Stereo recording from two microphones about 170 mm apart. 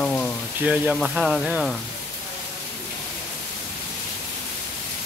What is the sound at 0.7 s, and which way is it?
Speech, 5° right (ahead or behind).